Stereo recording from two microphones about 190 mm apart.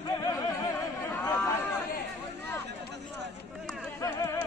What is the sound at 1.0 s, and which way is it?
Chatter, 10° left (ahead or behind).